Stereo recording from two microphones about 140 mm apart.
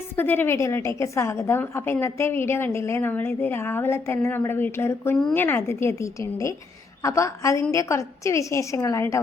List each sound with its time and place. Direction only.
0.2 s a woman's voice: 15° left (ahead or behind)